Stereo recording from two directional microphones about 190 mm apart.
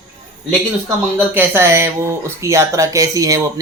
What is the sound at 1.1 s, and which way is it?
Speech, 10° right (ahead or behind).